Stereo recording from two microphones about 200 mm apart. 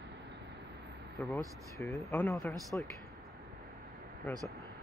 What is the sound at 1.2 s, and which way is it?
Speech, 10° left (ahead or behind).